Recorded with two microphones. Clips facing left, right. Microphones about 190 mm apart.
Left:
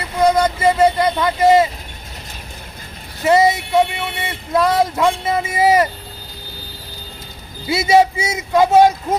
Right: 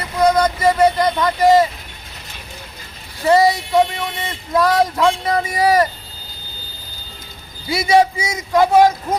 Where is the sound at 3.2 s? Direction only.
20° left (ahead or behind).